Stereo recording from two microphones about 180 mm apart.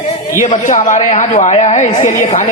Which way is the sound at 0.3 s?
45° left (ahead or behind).